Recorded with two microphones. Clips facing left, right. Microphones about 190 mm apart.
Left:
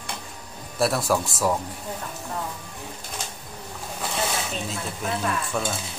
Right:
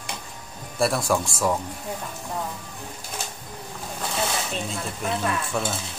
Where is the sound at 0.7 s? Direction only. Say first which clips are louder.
Even; centre (ahead or behind).